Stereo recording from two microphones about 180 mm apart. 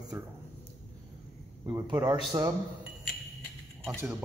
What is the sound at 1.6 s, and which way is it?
Speech, 20° right (ahead or behind).